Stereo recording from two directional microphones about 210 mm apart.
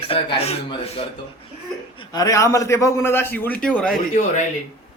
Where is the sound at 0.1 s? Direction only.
25° left (ahead or behind).